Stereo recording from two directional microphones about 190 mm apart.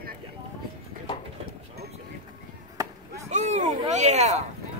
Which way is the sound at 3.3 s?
40° right (ahead or behind).